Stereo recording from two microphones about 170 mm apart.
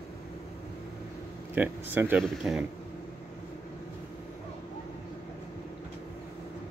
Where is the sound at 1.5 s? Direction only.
10° right (ahead or behind).